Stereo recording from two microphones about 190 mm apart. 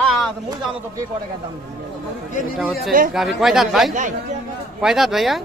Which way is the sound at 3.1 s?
Centre (ahead or behind).